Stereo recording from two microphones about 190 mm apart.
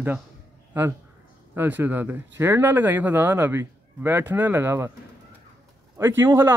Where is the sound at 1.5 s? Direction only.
10° right (ahead or behind).